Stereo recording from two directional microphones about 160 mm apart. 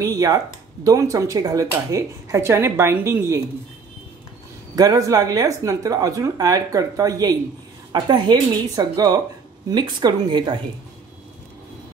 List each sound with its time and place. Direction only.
0.0 s a woman's voice: 20° right (ahead or behind)
4.7 s a woman's voice: 20° right (ahead or behind)